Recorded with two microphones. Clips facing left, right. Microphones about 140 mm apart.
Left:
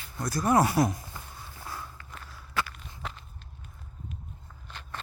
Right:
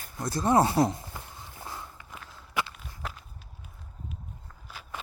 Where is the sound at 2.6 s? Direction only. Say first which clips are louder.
Even; 15° right (ahead or behind).